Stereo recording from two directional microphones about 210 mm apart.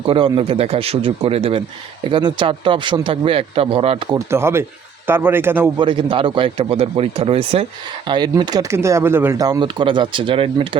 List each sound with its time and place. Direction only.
0.0 s speech: 25° right (ahead or behind)
4.3 s a man's voice: 10° right (ahead or behind)
5.8 s speech: 25° right (ahead or behind)